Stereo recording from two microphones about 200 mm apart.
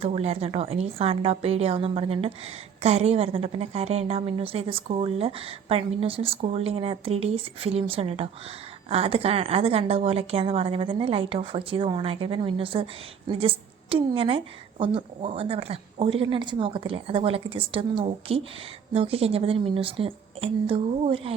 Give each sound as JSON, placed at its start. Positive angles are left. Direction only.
{"t": 0.0, "sound": "a woman's voice", "side_deg": -30}